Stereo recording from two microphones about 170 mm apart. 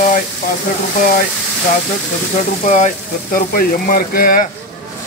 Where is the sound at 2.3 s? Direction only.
45° left (ahead or behind).